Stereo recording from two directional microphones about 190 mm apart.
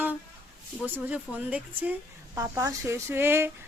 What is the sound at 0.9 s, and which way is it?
A woman's voice, 10° right (ahead or behind).